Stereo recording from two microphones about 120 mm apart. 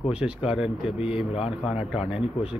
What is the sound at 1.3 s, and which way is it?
Speech, 55° left (ahead or behind).